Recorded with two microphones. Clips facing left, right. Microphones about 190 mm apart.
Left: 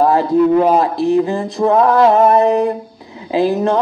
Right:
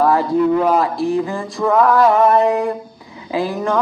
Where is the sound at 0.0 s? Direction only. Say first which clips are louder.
Left 3 dB; 25° left (ahead or behind).